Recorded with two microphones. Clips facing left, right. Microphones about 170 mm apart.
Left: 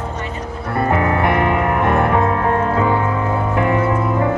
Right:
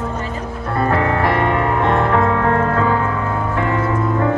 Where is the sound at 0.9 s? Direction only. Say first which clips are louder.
Even; 20° left (ahead or behind).